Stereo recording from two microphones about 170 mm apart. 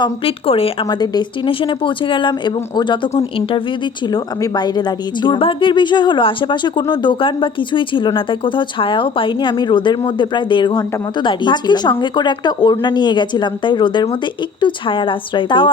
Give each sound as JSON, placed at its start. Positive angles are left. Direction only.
{"t": 0.0, "sound": "a woman's voice", "side_deg": 35}